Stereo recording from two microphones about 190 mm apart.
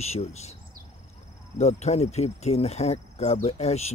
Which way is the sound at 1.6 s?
35° left (ahead or behind).